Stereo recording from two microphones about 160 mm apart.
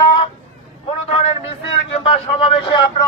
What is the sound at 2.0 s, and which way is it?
Speech, 30° left (ahead or behind).